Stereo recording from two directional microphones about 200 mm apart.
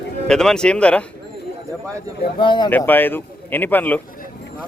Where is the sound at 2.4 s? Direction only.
25° left (ahead or behind).